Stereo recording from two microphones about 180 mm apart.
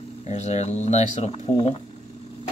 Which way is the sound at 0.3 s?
40° left (ahead or behind).